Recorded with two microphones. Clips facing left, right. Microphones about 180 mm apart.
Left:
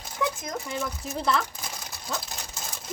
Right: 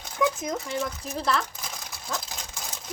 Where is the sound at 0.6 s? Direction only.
Centre (ahead or behind).